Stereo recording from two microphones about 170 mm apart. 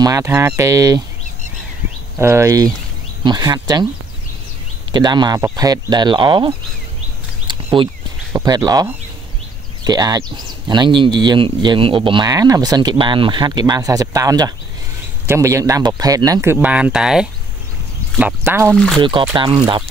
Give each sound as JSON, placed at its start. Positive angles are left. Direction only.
{"t": 0.0, "sound": "speech", "side_deg": -20}
{"t": 2.1, "sound": "speech", "side_deg": -15}
{"t": 4.9, "sound": "speech", "side_deg": -25}
{"t": 7.4, "sound": "a sound", "side_deg": -30}
{"t": 8.3, "sound": "speech", "side_deg": -20}
{"t": 9.8, "sound": "speech", "side_deg": -25}
{"t": 18.9, "sound": "speech", "side_deg": -30}